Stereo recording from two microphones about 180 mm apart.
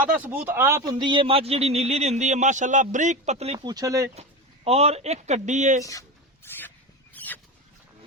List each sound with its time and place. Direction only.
0.2 s speech: 10° right (ahead or behind)
0.9 s a man's voice: 25° right (ahead or behind)
3.7 s speech: 20° right (ahead or behind)
4.1 s speech: 35° right (ahead or behind)
7.1 s rodents: 10° left (ahead or behind)